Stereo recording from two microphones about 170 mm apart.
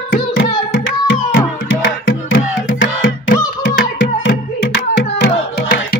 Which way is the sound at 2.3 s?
60° left (ahead or behind).